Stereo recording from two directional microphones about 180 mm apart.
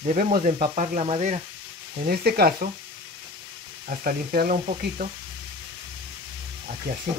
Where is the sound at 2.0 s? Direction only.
60° right (ahead or behind).